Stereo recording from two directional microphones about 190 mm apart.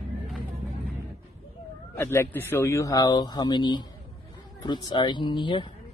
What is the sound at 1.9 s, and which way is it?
Speech, 10° left (ahead or behind).